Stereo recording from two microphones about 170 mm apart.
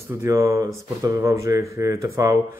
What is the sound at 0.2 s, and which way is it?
Speech, 20° right (ahead or behind).